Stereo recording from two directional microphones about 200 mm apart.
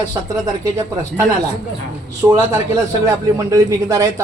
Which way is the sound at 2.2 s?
10° right (ahead or behind).